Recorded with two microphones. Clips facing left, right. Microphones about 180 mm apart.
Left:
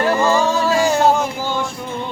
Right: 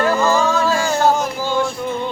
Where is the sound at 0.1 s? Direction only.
20° left (ahead or behind).